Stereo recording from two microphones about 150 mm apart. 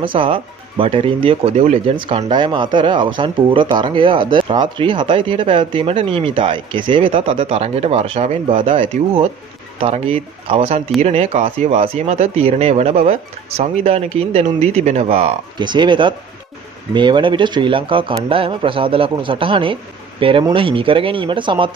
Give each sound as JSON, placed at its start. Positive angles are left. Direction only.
{"t": 0.1, "sound": "speech", "side_deg": -35}